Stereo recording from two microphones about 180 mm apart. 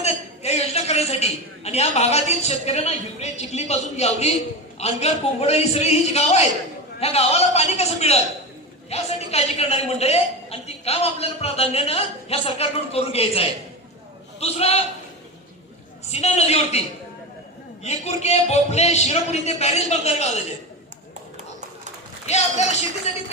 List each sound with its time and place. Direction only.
0.0 s a man's voice: 35° left (ahead or behind)
16.2 s a man's voice: 35° left (ahead or behind)
17.8 s a man's voice: 35° left (ahead or behind)
22.3 s a man's voice: 40° left (ahead or behind)